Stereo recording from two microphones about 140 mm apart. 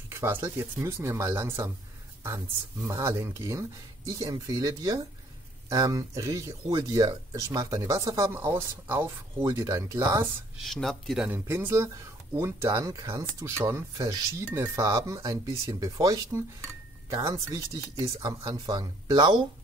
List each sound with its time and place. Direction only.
0.1 s speech: 20° right (ahead or behind)
2.9 s speech: 20° right (ahead or behind)
10.6 s speech: centre (ahead or behind)
11.3 s speech: 15° right (ahead or behind)